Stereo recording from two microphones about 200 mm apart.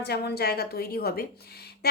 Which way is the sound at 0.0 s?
55° left (ahead or behind).